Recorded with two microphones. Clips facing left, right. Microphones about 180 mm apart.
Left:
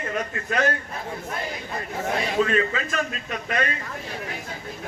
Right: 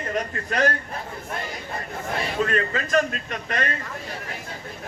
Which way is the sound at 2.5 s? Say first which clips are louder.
Even; 45° right (ahead or behind).